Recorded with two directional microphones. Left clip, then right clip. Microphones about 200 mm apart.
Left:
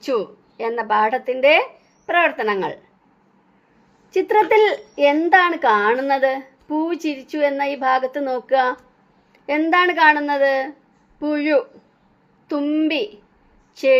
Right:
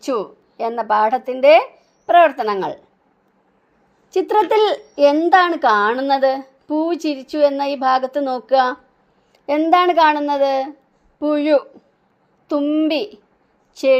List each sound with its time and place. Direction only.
0.0 s a woman's voice: 30° right (ahead or behind)
4.1 s a woman's voice: 30° right (ahead or behind)